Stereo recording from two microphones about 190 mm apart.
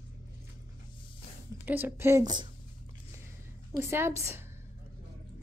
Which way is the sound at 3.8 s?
15° right (ahead or behind).